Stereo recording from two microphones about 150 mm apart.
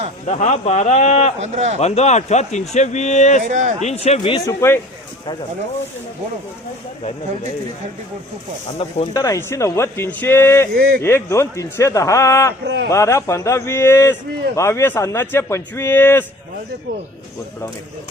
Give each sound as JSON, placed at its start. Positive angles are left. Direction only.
{"t": 0.3, "sound": "speech", "side_deg": 50}
{"t": 1.4, "sound": "speech", "side_deg": -50}
{"t": 1.8, "sound": "speech", "side_deg": 45}
{"t": 3.5, "sound": "a man's voice", "side_deg": -55}
{"t": 3.8, "sound": "speech", "side_deg": 45}
{"t": 4.4, "sound": "speech", "side_deg": 20}
{"t": 8.8, "sound": "speech", "side_deg": 40}
{"t": 9.1, "sound": "a man's voice", "side_deg": 20}
{"t": 10.8, "sound": "speech", "side_deg": -90}
{"t": 11.0, "sound": "a man's voice", "side_deg": 15}